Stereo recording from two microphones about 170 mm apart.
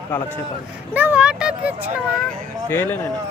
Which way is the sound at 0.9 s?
10° right (ahead or behind).